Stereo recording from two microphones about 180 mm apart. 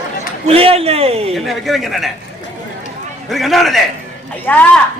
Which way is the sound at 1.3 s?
Centre (ahead or behind).